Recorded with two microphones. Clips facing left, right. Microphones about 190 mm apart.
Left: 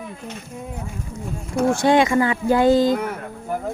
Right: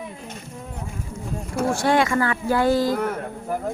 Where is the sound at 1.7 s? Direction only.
20° left (ahead or behind).